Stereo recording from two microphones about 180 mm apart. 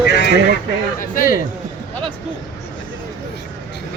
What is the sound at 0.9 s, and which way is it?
Speech, 50° left (ahead or behind).